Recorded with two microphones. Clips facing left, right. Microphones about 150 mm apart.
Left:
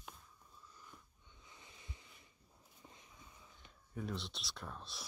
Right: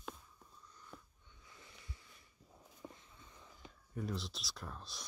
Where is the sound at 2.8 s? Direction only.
85° right.